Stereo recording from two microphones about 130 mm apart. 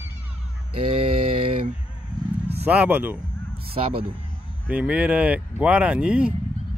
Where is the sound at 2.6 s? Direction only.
10° right (ahead or behind).